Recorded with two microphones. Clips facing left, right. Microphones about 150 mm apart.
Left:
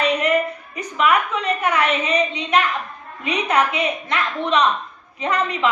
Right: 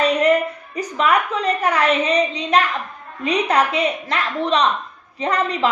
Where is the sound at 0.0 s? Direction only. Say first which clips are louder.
Right 4 dB; 35° right (ahead or behind).